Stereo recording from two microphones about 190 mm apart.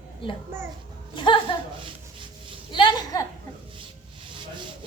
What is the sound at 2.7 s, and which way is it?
Speech, 20° left (ahead or behind).